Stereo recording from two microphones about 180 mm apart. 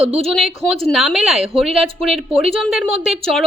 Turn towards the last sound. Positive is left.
turn(degrees=0)  # may be behind; listen again after turning